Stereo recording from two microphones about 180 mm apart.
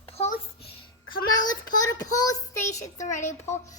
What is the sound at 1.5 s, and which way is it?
Child singing, 20° left (ahead or behind).